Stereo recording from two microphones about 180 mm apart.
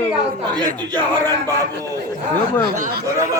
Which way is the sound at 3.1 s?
20° right (ahead or behind).